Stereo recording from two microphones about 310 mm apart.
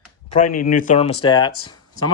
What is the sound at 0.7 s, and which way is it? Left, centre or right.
Speech, left.